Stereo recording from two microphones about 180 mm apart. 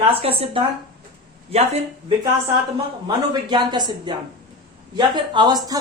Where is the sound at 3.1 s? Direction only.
25° right (ahead or behind).